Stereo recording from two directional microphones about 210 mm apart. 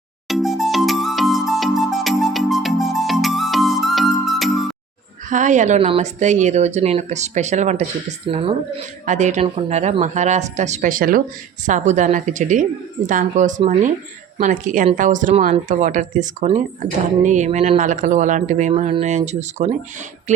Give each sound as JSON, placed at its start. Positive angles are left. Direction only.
{"t": 0.3, "sound": "music", "side_deg": 0}
{"t": 5.3, "sound": "a woman's voice", "side_deg": -35}